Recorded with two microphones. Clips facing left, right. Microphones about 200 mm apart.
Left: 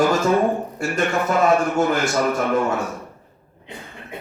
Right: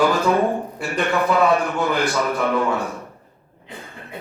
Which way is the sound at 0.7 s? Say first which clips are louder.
Even; 45° left (ahead or behind).